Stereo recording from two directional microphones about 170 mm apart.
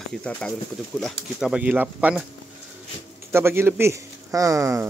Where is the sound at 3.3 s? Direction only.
15° right (ahead or behind).